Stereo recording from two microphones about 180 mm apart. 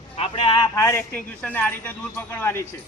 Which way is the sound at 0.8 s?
10° left (ahead or behind).